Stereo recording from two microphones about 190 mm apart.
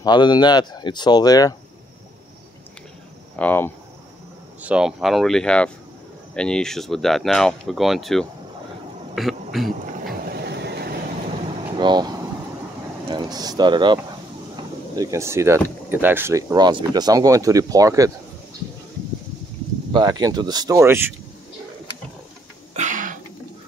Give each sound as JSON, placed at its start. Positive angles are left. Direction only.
{"t": 0.0, "sound": "speech", "side_deg": 25}
{"t": 3.3, "sound": "speech", "side_deg": 10}
{"t": 4.6, "sound": "speech", "side_deg": -5}
{"t": 10.0, "sound": "vehicle", "side_deg": -60}
{"t": 11.8, "sound": "vehicle", "side_deg": -20}
{"t": 13.1, "sound": "speech", "side_deg": -20}
{"t": 15.0, "sound": "speech", "side_deg": -15}
{"t": 19.9, "sound": "speech", "side_deg": -20}
{"t": 22.8, "sound": "throat clearing", "side_deg": -40}